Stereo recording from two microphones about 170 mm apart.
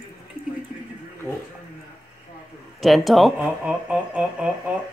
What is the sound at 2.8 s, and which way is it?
Speech, centre (ahead or behind).